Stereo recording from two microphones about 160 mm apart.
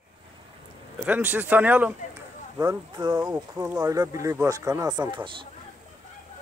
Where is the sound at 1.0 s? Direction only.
10° right (ahead or behind).